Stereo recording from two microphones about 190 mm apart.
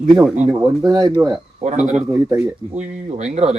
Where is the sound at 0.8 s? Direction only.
20° right (ahead or behind).